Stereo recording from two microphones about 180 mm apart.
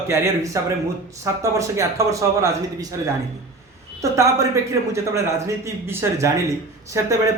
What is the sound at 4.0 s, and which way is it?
A man's voice, 15° right (ahead or behind).